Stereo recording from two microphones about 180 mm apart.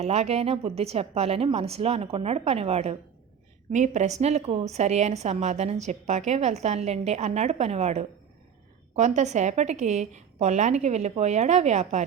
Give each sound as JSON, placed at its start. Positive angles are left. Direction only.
{"t": 0.0, "sound": "a woman's voice", "side_deg": -35}